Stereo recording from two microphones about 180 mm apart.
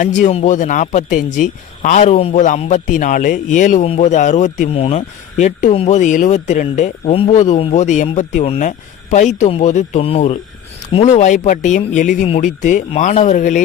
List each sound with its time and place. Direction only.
0.0 s a man's voice: 45° left (ahead or behind)
7.1 s a man's voice: 35° left (ahead or behind)